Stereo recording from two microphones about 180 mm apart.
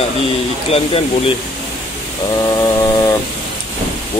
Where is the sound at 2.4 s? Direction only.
20° left (ahead or behind).